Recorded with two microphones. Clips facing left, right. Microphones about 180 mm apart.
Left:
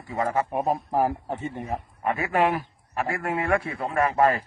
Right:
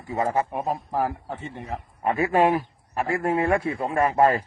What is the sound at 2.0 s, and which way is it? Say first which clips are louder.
Speech: right 3 dB; 25° right (ahead or behind).